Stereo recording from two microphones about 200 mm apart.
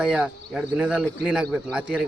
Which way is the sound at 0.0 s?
5° right (ahead or behind).